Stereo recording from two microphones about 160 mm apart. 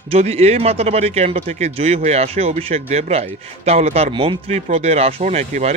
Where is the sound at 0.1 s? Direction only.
40° right (ahead or behind).